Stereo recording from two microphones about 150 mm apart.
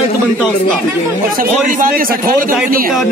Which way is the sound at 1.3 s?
65° right (ahead or behind).